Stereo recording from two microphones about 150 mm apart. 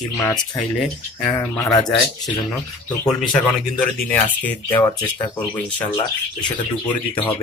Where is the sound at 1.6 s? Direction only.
25° left (ahead or behind).